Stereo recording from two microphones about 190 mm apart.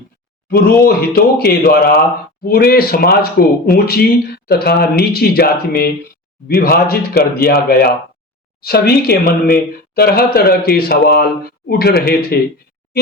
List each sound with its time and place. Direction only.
0.5 s speech: 55° left (ahead or behind)